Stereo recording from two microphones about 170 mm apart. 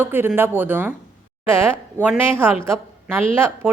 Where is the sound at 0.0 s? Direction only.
10° right (ahead or behind).